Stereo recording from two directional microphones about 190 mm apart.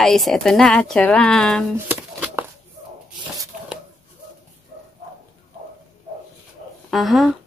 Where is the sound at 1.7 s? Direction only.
10° right (ahead or behind).